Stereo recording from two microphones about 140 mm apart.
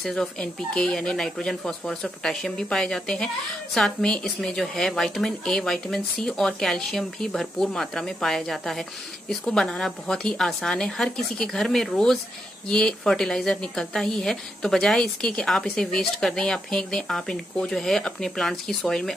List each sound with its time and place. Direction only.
0.0 s a woman's voice: 5° left (ahead or behind)